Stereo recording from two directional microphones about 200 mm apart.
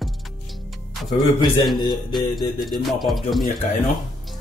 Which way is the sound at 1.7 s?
20° left (ahead or behind).